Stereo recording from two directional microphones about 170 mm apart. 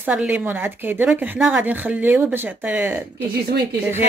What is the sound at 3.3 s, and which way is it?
Speech, 70° right (ahead or behind).